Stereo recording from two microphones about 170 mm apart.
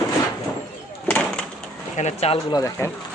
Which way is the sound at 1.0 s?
5° left (ahead or behind).